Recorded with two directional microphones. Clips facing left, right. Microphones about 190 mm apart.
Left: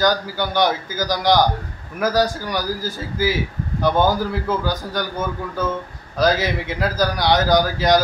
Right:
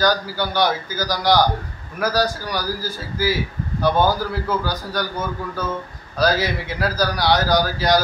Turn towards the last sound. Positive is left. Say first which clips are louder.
# left 2 dB
turn(degrees=20)  # may be behind; listen again after turning